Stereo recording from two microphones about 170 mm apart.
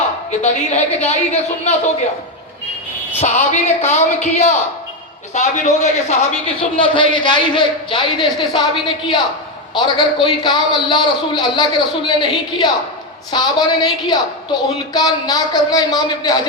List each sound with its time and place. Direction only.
0.3 s a woman's voice: 40° left (ahead or behind)
3.2 s a woman's voice: 40° left (ahead or behind); by 16.5 s 25° left (ahead or behind)